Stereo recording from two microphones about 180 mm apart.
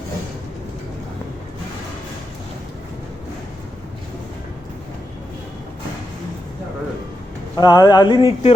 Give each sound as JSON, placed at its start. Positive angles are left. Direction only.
{"t": 7.5, "sound": "speech", "side_deg": 25}